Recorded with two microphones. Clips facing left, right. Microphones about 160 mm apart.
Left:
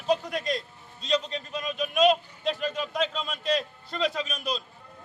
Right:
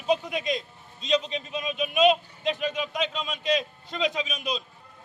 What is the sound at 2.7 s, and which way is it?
Speech, 15° right (ahead or behind).